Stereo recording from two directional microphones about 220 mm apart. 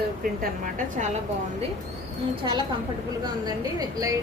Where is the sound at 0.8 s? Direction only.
35° right (ahead or behind).